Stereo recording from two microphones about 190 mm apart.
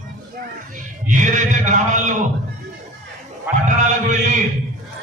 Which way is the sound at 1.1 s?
40° right (ahead or behind).